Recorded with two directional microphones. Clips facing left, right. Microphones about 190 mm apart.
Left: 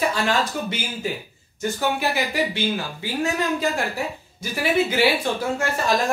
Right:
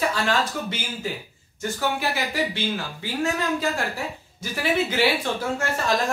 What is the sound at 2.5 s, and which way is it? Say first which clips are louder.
Speech: left 3 dB; 15° left (ahead or behind).